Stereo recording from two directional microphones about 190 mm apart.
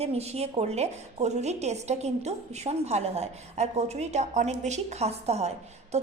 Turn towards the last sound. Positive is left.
turn(degrees=-35)  # may be behind; listen again after turning